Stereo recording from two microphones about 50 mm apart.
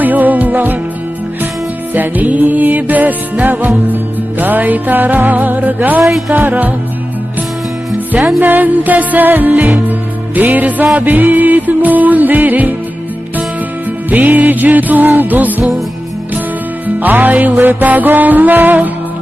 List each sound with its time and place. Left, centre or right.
0.0 s music: right
1.9 s music: right
6.0 s music: centre
6.3 s music: right
7.9 s music: right
14.1 s music: right
16.8 s music: right